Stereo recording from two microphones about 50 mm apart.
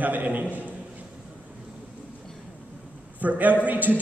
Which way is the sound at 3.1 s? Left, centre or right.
Right.